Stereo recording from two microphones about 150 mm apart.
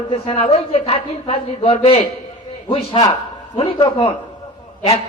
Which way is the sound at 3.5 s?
35° left (ahead or behind).